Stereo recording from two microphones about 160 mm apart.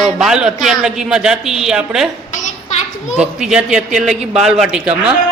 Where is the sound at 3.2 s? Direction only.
5° right (ahead or behind).